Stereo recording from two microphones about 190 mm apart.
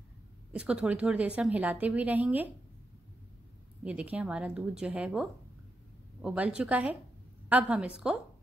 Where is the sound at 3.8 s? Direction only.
10° right (ahead or behind).